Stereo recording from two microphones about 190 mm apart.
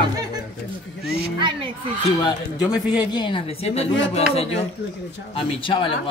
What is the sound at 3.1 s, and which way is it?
A woman's voice, 25° left (ahead or behind).